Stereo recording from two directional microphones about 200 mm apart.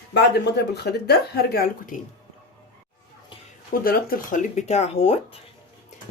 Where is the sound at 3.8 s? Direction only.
50° left (ahead or behind); by 5.3 s 30° left (ahead or behind).